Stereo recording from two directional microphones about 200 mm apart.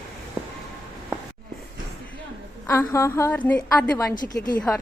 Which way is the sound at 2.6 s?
15° left (ahead or behind).